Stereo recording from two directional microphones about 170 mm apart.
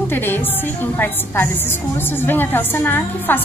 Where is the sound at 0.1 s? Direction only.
10° left (ahead or behind).